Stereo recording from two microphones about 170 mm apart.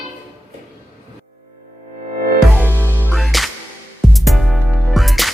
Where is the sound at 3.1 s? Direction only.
Centre (ahead or behind).